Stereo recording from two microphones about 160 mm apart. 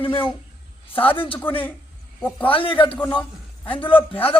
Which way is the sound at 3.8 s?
35° left (ahead or behind).